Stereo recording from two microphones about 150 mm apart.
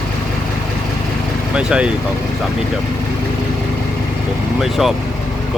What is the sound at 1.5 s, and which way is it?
Speech, 5° right (ahead or behind).